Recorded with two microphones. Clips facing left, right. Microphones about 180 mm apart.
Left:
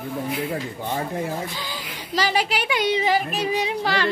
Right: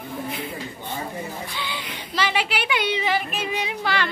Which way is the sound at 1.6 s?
40° left (ahead or behind).